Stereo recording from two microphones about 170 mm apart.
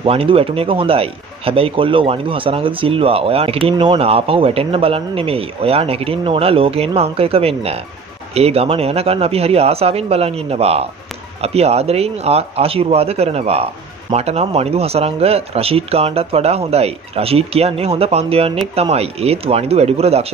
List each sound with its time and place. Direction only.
0.0 s speech: 35° right (ahead or behind)